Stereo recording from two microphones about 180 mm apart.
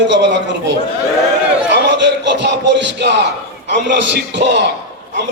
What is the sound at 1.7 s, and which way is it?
A man's voice, 70° right (ahead or behind).